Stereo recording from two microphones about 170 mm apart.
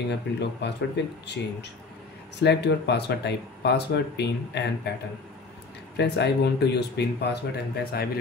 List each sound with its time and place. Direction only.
0.1 s speech: 85° left
5.9 s speech: 85° left